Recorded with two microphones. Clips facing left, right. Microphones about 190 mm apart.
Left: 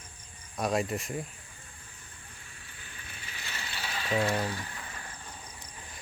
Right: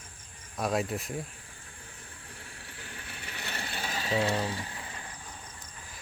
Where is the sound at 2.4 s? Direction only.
70° right (ahead or behind); by 4.2 s 40° right (ahead or behind).